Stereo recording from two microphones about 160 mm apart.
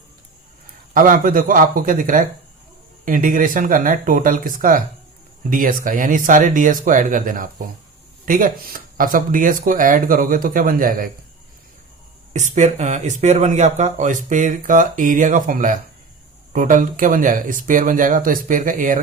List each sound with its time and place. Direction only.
0.9 s speech: 55° right (ahead or behind)
12.3 s speech: 45° right (ahead or behind)